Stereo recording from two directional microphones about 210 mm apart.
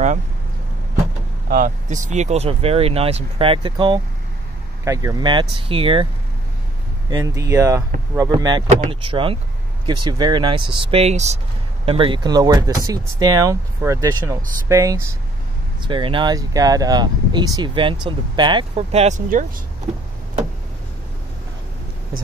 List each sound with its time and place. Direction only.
1.5 s speech: 35° right (ahead or behind)
7.1 s speech: 15° right (ahead or behind); by 19.4 s 40° right (ahead or behind)